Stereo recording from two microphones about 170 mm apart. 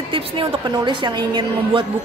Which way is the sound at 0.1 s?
30° right (ahead or behind).